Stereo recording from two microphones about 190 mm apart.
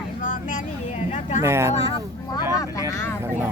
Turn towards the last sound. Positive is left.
turn(degrees=15)  # may be behind; listen again after turning